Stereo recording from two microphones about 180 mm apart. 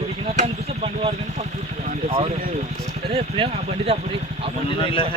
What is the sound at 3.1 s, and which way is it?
Speech, 30° right (ahead or behind).